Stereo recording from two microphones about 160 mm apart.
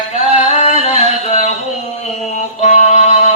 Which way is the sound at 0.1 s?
45° left (ahead or behind).